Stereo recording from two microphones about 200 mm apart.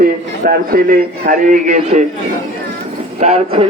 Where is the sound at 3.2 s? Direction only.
30° right (ahead or behind).